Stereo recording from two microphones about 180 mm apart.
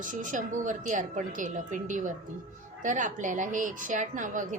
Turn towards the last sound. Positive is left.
turn(degrees=-45)  # may be behind; listen again after turning